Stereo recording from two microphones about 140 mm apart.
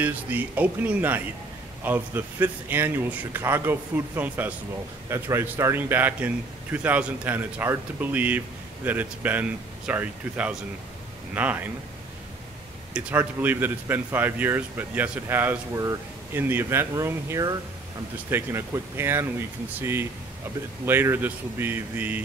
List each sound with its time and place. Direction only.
0.0 s a man's voice: 10° right (ahead or behind)
12.9 s a man's voice: 15° right (ahead or behind)